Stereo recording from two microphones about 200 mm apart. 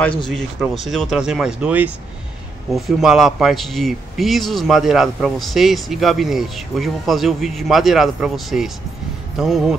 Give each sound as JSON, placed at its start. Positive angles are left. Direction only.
{"t": 0.3, "sound": "a man's voice", "side_deg": 0}